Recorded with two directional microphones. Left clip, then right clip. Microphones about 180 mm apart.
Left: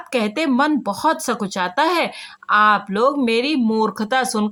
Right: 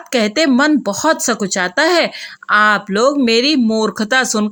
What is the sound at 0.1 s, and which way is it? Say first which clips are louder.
A woman's voice: right 6 dB; 20° right (ahead or behind).